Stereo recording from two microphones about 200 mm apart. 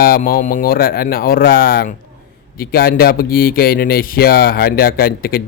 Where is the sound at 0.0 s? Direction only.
45° left (ahead or behind).